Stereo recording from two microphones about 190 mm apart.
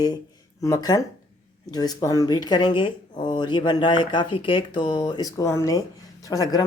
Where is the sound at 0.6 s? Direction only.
20° left (ahead or behind).